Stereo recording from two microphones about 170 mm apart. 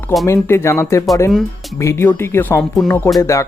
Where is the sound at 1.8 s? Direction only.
15° left (ahead or behind).